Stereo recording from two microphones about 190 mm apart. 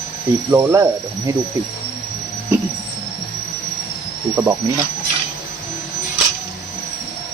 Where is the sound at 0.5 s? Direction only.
15° right (ahead or behind).